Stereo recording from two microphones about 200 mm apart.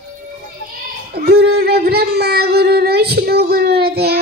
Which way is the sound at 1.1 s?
50° right (ahead or behind).